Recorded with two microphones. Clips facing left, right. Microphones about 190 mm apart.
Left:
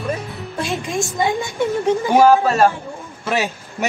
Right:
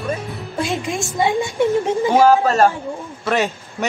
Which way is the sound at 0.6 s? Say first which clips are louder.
Right 1 dB; 15° right (ahead or behind).